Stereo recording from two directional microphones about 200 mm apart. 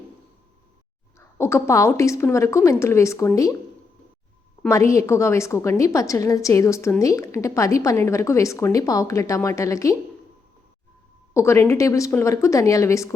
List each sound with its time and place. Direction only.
1.4 s a woman's voice: 15° left (ahead or behind)
4.7 s a woman's voice: 15° left (ahead or behind)
11.3 s a woman's voice: 15° left (ahead or behind)